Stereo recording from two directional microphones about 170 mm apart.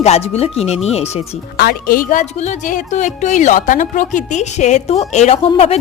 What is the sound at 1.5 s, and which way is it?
A woman's voice, 60° left (ahead or behind).